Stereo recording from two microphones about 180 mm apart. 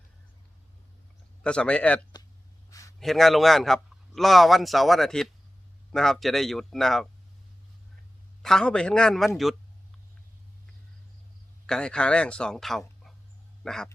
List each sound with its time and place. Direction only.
1.5 s speech: 5° left (ahead or behind)
2.6 s a sound: 20° left (ahead or behind)
3.0 s a man's voice: centre (ahead or behind)
8.4 s a man's voice: 5° left (ahead or behind)
11.6 s a man's voice: 5° left (ahead or behind)